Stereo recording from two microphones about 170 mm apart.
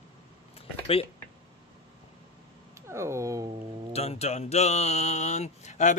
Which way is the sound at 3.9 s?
35° left (ahead or behind).